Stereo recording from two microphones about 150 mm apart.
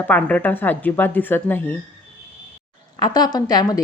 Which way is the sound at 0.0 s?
10° left (ahead or behind).